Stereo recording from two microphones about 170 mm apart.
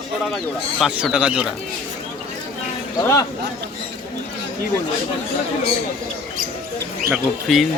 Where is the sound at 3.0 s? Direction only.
20° left (ahead or behind).